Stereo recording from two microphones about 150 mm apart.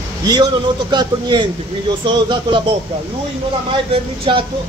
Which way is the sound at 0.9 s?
30° right (ahead or behind).